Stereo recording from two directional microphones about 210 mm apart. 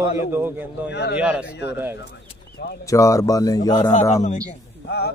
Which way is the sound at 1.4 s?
55° left (ahead or behind).